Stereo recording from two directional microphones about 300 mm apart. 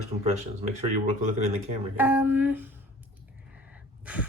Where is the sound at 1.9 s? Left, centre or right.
Centre.